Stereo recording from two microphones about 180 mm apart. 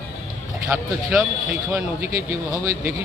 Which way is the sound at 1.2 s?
5° right (ahead or behind).